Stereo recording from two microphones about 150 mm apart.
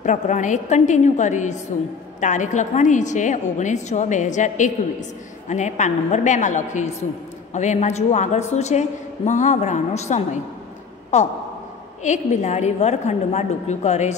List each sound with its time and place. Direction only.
0.0 s a woman's voice: 55° left (ahead or behind)